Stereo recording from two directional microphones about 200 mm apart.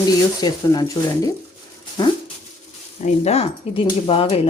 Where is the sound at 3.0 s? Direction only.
30° left (ahead or behind).